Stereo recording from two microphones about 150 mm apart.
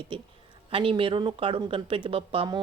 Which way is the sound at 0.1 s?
35° right (ahead or behind).